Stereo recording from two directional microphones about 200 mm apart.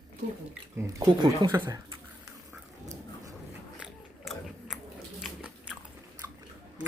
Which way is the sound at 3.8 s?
Centre (ahead or behind).